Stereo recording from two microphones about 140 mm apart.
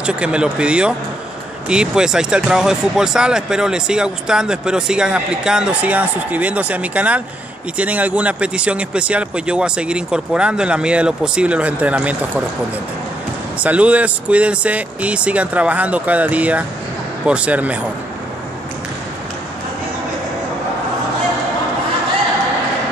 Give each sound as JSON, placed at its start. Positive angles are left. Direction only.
{"t": 0.0, "sound": "speech", "side_deg": -5}
{"t": 13.6, "sound": "speech", "side_deg": -10}